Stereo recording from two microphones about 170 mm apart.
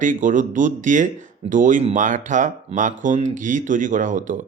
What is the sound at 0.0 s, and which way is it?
Speech, 50° right (ahead or behind).